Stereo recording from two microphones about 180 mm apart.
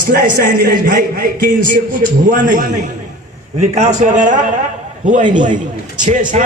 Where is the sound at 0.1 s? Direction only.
50° right (ahead or behind).